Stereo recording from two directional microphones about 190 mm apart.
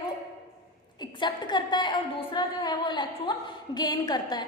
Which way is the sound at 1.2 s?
25° left (ahead or behind).